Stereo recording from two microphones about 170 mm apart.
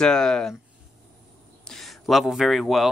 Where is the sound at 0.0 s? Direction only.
5° left (ahead or behind).